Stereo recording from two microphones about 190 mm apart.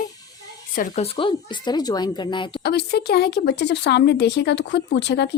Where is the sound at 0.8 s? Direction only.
35° left (ahead or behind).